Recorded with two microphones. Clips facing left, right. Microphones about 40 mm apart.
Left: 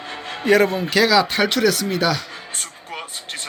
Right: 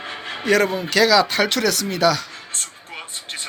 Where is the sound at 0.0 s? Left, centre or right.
Right.